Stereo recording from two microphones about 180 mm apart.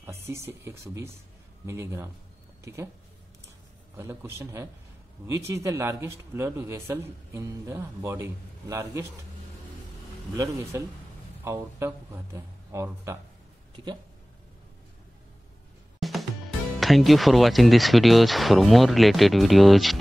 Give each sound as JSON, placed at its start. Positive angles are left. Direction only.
{"t": 0.0, "sound": "speech", "side_deg": -15}
{"t": 3.9, "sound": "speech", "side_deg": -15}
{"t": 10.3, "sound": "speech", "side_deg": -15}
{"t": 16.0, "sound": "music", "side_deg": 0}
{"t": 16.8, "sound": "speech", "side_deg": 0}